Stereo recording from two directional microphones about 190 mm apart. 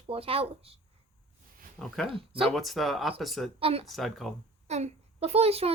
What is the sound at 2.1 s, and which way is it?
Speech, 25° right (ahead or behind).